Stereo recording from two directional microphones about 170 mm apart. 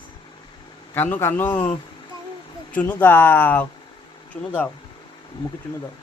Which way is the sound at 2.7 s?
10° left (ahead or behind).